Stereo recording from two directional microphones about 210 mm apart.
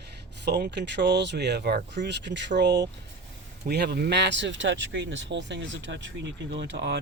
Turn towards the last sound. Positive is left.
turn(degrees=-55)  # may be behind; listen again after turning